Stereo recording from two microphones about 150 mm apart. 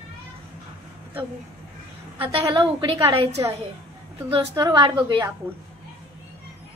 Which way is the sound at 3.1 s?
35° right (ahead or behind).